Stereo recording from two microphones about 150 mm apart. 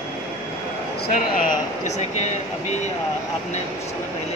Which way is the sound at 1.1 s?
60° left (ahead or behind).